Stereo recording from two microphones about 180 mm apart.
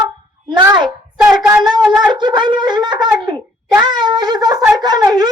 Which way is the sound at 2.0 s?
25° right (ahead or behind).